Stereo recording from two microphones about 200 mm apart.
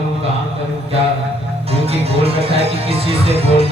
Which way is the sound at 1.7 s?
30° right (ahead or behind).